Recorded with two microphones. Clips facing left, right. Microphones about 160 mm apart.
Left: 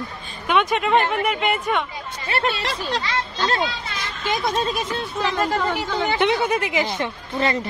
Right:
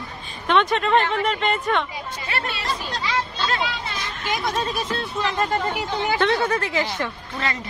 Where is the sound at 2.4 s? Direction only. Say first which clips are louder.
Left 4 dB; 90° left.